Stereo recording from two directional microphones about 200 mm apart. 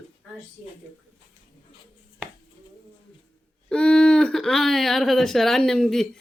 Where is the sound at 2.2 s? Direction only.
5° right (ahead or behind).